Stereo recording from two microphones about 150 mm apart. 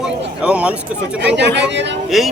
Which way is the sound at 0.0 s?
5° right (ahead or behind).